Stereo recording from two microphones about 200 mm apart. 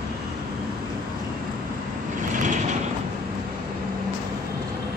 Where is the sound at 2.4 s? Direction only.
40° right (ahead or behind).